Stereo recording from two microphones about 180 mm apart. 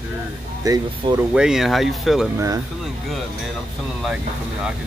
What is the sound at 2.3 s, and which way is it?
Speech, 15° right (ahead or behind).